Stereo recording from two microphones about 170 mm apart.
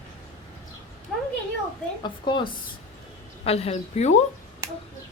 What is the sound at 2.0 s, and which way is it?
A woman's voice, 30° left (ahead or behind).